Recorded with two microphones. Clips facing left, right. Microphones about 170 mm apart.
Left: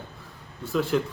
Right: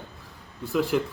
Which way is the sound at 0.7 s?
15° right (ahead or behind).